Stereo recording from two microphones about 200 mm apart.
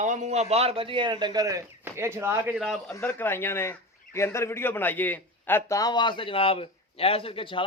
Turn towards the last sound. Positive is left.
turn(degrees=25)  # may be behind; listen again after turning